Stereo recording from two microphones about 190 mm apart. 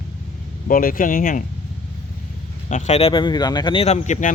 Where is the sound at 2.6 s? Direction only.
40° left (ahead or behind).